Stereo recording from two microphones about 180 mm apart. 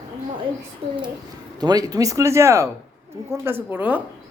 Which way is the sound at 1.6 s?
20° right (ahead or behind).